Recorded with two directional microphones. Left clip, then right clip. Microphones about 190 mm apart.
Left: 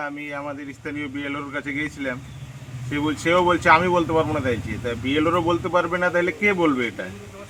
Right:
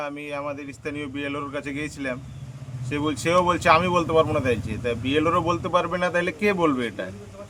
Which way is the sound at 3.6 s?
30° right (ahead or behind).